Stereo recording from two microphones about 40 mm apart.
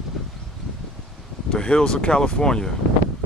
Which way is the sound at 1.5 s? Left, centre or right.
Left.